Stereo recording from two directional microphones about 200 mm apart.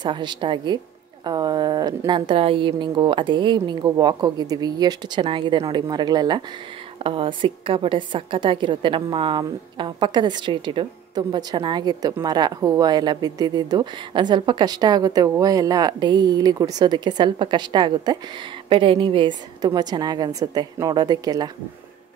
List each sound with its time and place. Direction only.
0.0 s a woman's voice: 20° right (ahead or behind)